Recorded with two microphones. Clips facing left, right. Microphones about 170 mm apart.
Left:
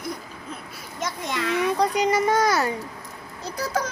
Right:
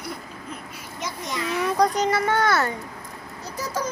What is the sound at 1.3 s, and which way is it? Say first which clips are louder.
Speech: left 2 dB; 65° left (ahead or behind).